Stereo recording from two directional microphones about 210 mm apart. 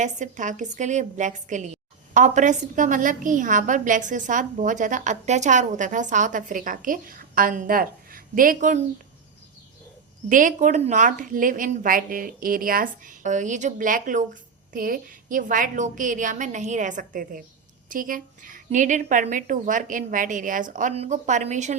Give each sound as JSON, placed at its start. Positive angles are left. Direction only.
{"t": 0.0, "sound": "a woman's voice", "side_deg": -35}
{"t": 10.2, "sound": "a woman's voice", "side_deg": -40}